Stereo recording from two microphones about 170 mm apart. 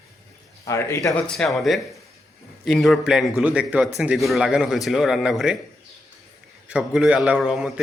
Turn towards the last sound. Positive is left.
turn(degrees=-5)  # may be behind; listen again after turning